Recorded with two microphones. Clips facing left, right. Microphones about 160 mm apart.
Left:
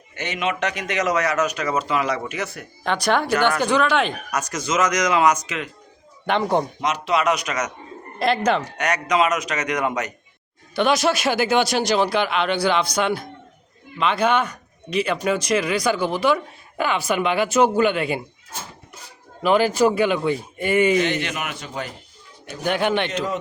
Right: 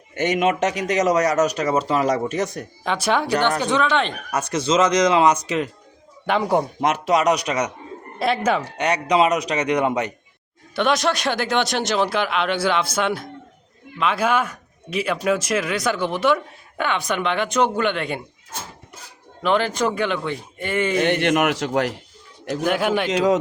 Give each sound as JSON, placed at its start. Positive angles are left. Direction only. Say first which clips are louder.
{"t": 0.1, "sound": "speech", "louder": "right 6 dB", "side_deg": -45}
{"t": 2.8, "sound": "speech", "louder": "left 1 dB", "side_deg": 0}
{"t": 4.3, "sound": "speech", "louder": "right 4 dB", "side_deg": -30}
{"t": 6.2, "sound": "a man's voice", "louder": "right 1 dB", "side_deg": -5}
{"t": 6.8, "sound": "speech", "louder": "right 3 dB", "side_deg": -50}
{"t": 8.2, "sound": "speech", "louder": "left 1 dB", "side_deg": -5}
{"t": 8.6, "sound": "speech", "louder": "right 2 dB", "side_deg": -30}
{"t": 10.8, "sound": "speech", "louder": "left 1 dB", "side_deg": 0}
{"t": 19.4, "sound": "speech", "louder": "left 3 dB", "side_deg": 5}
{"t": 21.0, "sound": "a man's voice", "louder": "right 6 dB", "side_deg": -60}
{"t": 22.6, "sound": "speech", "louder": "even", "side_deg": -5}